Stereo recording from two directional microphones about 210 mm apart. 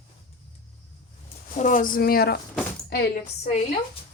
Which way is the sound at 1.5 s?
35° left (ahead or behind).